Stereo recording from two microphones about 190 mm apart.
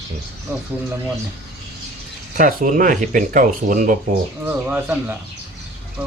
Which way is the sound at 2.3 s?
45° right (ahead or behind).